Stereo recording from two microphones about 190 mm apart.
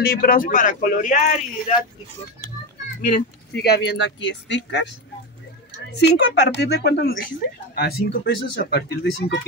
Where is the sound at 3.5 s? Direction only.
60° left (ahead or behind).